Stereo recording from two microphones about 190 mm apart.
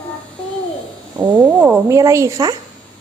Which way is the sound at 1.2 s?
10° right (ahead or behind).